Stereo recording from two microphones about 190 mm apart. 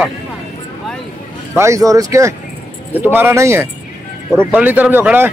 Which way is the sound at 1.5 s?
15° right (ahead or behind).